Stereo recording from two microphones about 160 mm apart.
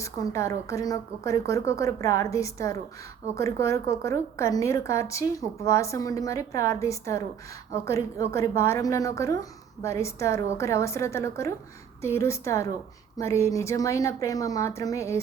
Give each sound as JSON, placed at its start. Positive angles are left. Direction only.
{"t": 0.0, "sound": "a woman's voice", "side_deg": 20}